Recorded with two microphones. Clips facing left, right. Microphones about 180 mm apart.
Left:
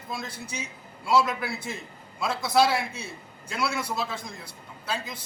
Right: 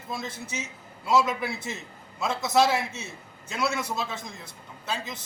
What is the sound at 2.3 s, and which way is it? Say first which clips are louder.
Speech: right 1 dB; 20° right (ahead or behind).